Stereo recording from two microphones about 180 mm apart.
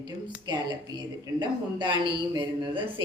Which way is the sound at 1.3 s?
25° right (ahead or behind).